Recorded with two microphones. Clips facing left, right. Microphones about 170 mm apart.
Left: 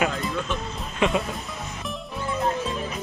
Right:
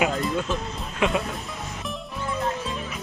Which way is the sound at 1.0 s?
Centre (ahead or behind).